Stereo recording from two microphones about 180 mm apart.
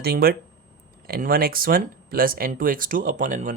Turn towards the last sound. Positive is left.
turn(degrees=-45)  # may be behind; listen again after turning